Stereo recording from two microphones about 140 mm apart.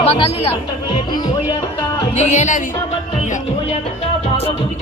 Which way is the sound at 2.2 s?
55° left (ahead or behind).